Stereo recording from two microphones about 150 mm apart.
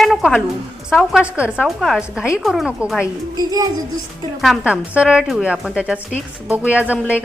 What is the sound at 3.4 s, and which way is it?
Music, 25° right (ahead or behind).